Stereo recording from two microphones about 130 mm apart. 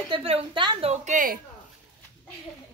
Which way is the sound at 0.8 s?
70° right (ahead or behind).